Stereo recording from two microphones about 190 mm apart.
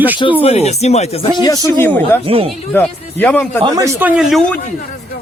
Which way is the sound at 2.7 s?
10° left (ahead or behind).